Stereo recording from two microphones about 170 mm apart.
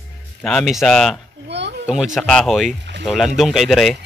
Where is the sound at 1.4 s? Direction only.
90° right.